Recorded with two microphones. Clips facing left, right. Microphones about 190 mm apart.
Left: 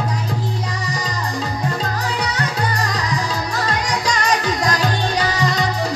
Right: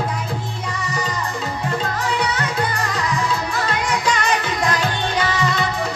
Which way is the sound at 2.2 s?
40° left (ahead or behind).